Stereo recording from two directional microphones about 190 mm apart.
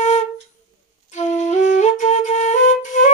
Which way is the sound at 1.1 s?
35° left (ahead or behind).